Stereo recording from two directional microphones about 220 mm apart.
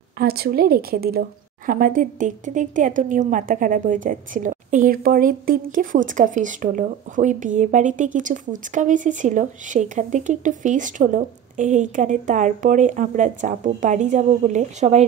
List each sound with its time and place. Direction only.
0.2 s a woman's voice: 45° right (ahead or behind)